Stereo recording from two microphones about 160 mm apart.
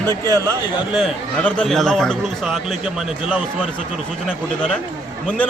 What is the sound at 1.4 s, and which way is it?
A man's voice, 5° left (ahead or behind).